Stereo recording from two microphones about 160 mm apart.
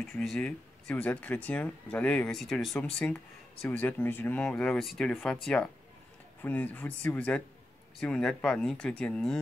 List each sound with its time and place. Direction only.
0.0 s speech: centre (ahead or behind)